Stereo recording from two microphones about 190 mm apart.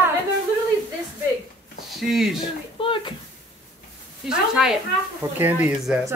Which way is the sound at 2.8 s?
25° left (ahead or behind).